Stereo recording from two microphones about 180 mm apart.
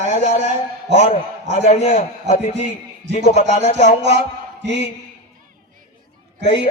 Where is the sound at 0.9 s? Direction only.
35° left (ahead or behind).